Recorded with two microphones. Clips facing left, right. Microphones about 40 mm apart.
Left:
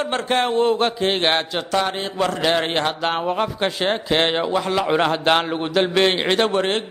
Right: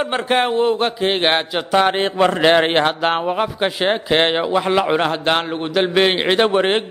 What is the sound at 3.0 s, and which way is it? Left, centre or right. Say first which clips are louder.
A man's voice: right 3 dB; centre.